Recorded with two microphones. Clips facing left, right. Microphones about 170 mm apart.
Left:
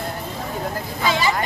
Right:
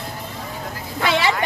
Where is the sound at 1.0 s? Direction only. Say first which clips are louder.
Right 1 dB; 70° right (ahead or behind).